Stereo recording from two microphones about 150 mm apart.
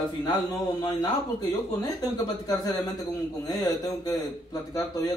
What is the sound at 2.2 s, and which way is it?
Speech, 25° left (ahead or behind).